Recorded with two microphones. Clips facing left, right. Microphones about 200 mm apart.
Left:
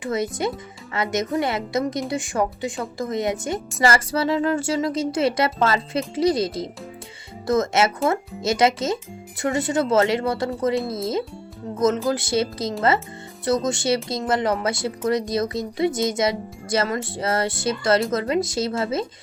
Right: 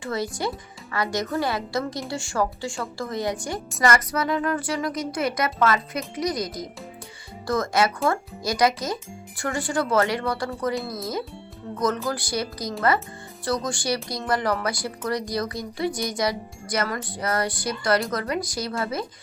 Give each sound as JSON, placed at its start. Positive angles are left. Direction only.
{"t": 0.0, "sound": "speech", "side_deg": 20}